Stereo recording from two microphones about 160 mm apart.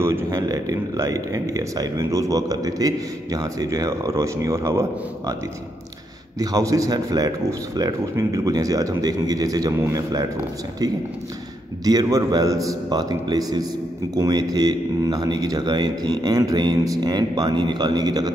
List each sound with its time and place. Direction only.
0.0 s a man's voice: 15° right (ahead or behind)
6.4 s a man's voice: 20° right (ahead or behind)
11.8 s a man's voice: 25° right (ahead or behind)